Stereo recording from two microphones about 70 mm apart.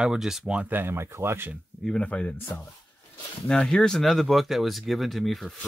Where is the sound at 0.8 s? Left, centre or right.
Right.